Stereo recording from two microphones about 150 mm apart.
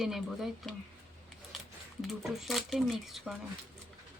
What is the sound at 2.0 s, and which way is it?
Speech, centre (ahead or behind).